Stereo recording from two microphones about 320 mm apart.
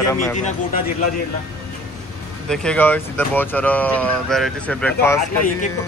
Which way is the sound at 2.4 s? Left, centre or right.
Centre.